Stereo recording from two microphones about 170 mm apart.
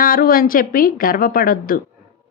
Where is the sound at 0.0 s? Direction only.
60° left (ahead or behind).